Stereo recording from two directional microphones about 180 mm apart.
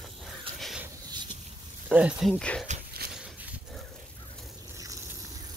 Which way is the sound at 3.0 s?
60° right (ahead or behind).